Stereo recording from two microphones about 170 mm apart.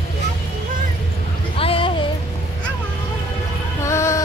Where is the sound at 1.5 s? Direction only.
35° left (ahead or behind).